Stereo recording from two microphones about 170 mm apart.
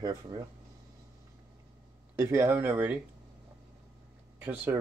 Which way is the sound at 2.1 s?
15° right (ahead or behind).